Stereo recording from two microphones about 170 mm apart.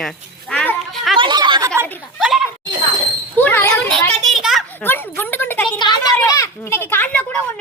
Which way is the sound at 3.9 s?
Centre (ahead or behind).